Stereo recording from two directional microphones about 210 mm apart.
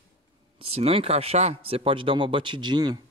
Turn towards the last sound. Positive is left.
turn(degrees=-20)  # may be behind; listen again after turning